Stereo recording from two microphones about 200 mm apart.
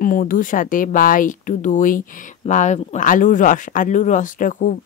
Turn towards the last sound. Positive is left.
turn(degrees=40)  # may be behind; listen again after turning